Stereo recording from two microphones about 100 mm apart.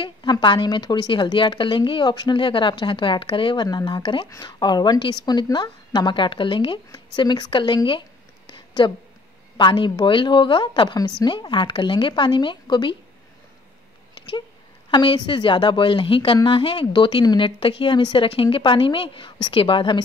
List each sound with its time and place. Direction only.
0.0 s a woman's voice: 50° left (ahead or behind)
3.6 s a woman's voice: 50° left (ahead or behind)
6.9 s a woman's voice: 45° left (ahead or behind)
8.5 s a sound: 55° left (ahead or behind)
9.6 s a woman's voice: 50° left (ahead or behind)
11.3 s a woman's voice: 55° left (ahead or behind)
14.9 s a woman's voice: 50° left (ahead or behind)
17.6 s a woman's voice: 65° left (ahead or behind)